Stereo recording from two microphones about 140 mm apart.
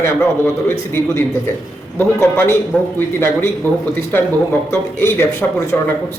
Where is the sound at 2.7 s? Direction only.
5° left (ahead or behind).